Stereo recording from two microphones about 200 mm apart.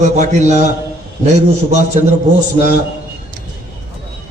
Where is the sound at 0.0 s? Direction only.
35° right (ahead or behind).